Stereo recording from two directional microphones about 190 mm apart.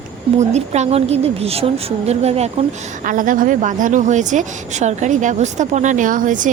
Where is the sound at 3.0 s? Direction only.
45° right (ahead or behind).